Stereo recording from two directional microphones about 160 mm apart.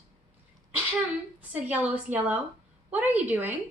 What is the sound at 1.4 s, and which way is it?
A woman's voice, 10° right (ahead or behind).